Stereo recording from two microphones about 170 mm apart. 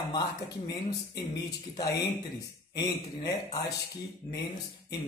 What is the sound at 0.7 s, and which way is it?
A man's voice, 20° left (ahead or behind).